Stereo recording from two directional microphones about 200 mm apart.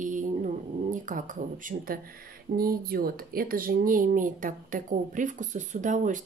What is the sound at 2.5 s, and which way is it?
Speech, 45° right (ahead or behind).